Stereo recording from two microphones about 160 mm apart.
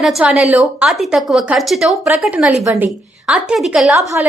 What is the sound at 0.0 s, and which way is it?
A woman's voice, 5° right (ahead or behind).